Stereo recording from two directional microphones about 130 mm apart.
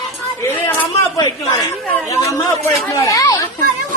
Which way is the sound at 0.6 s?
20° left (ahead or behind).